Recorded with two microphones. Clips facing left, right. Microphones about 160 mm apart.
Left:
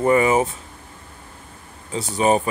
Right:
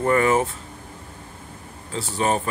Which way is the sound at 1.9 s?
15° left (ahead or behind).